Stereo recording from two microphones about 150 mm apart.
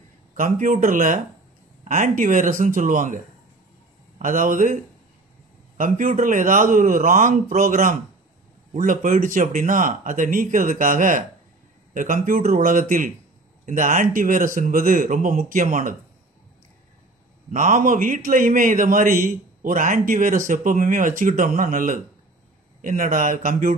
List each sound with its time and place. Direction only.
0.4 s a man's voice: 65° right (ahead or behind)
4.2 s a man's voice: 60° right (ahead or behind)
5.8 s a man's voice: 60° right (ahead or behind)
17.5 s a man's voice: 60° right (ahead or behind)